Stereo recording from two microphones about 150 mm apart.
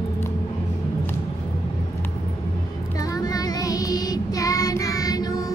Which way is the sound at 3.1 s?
25° left (ahead or behind).